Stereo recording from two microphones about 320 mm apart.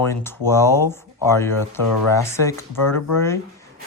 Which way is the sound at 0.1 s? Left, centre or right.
Centre.